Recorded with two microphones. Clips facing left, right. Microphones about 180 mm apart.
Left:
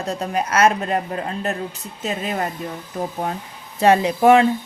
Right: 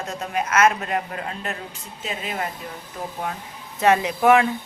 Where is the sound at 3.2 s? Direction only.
35° left (ahead or behind).